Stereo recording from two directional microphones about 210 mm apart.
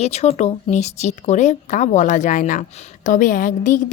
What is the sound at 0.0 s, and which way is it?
Speech, 30° left (ahead or behind).